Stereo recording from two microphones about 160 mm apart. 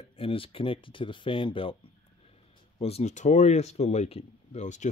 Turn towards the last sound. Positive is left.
turn(degrees=50)  # may be behind; listen again after turning